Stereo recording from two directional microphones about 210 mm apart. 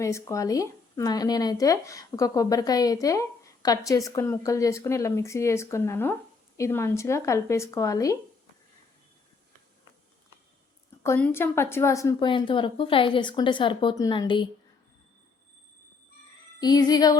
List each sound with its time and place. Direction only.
0.0 s speech: 15° left (ahead or behind)
11.0 s a woman's voice: 10° left (ahead or behind)
16.6 s speech: 20° left (ahead or behind)